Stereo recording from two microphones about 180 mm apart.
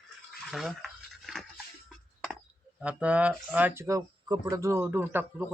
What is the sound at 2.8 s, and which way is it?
Speech, 5° right (ahead or behind).